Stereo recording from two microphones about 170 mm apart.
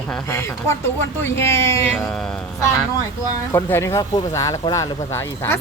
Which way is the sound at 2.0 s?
5° left (ahead or behind).